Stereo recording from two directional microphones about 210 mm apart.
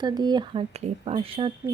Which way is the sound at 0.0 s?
20° right (ahead or behind).